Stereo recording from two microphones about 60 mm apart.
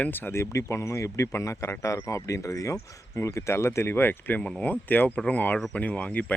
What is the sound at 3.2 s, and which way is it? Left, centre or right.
Speech, left.